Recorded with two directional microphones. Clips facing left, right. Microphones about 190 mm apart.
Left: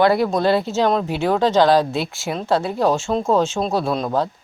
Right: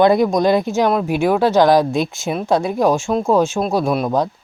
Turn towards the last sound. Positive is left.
turn(degrees=-15)  # may be behind; listen again after turning